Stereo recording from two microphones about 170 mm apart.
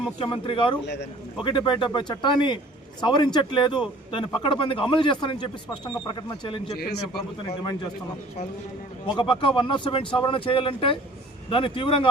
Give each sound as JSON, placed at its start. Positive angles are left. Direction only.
{"t": 0.2, "sound": "speech", "side_deg": 30}
{"t": 9.0, "sound": "speech", "side_deg": 30}